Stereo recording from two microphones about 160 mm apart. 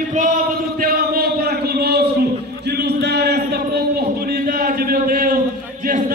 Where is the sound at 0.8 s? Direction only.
70° right (ahead or behind).